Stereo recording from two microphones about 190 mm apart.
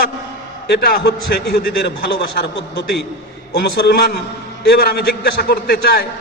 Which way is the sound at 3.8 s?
55° left (ahead or behind).